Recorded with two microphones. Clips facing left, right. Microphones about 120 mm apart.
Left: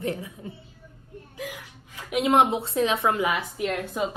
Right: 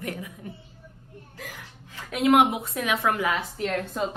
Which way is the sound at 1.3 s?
15° left (ahead or behind).